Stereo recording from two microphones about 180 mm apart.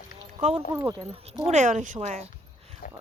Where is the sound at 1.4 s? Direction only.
40° right (ahead or behind).